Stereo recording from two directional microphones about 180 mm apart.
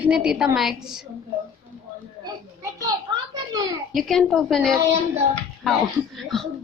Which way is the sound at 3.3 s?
20° right (ahead or behind).